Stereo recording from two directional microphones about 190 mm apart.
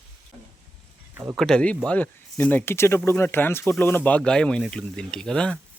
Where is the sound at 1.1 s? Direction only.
10° right (ahead or behind).